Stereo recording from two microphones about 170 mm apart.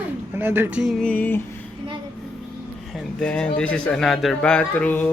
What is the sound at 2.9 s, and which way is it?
Speech, 5° left (ahead or behind).